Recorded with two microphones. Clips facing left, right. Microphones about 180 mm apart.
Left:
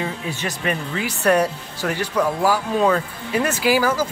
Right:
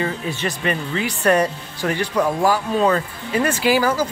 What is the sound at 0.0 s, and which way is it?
Speech, 10° left (ahead or behind).